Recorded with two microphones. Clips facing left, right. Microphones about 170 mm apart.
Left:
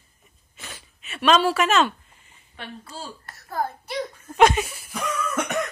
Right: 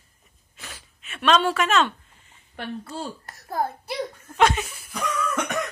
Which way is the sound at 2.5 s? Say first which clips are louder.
Right 6 dB; 60° right (ahead or behind).